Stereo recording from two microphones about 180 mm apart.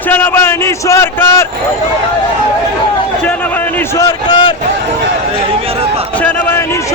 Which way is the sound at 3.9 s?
25° left (ahead or behind).